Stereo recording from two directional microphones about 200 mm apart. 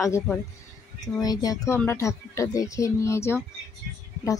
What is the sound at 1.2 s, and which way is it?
Speech, 20° left (ahead or behind).